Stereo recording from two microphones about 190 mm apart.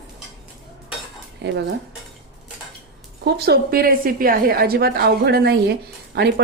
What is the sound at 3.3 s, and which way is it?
A woman's voice, 60° right (ahead or behind).